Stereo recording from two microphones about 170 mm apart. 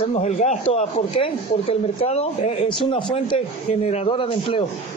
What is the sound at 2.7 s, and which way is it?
A man's voice, 30° left (ahead or behind).